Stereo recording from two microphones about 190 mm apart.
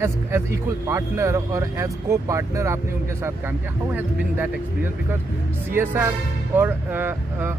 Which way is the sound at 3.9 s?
10° right (ahead or behind).